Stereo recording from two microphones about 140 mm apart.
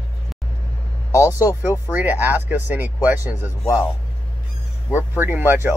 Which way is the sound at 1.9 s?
10° right (ahead or behind).